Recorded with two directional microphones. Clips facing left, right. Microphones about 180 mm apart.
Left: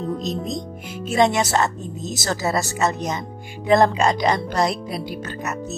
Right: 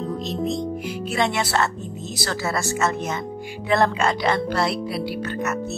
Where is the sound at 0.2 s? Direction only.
40° left (ahead or behind).